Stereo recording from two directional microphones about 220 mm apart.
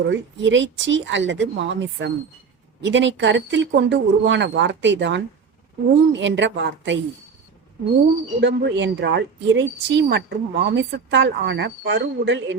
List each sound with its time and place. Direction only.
0.1 s speech: 55° right (ahead or behind)
8.4 s a woman's voice: 55° right (ahead or behind)